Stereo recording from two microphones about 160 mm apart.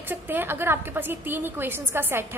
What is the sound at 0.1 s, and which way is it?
A woman's voice, 15° right (ahead or behind).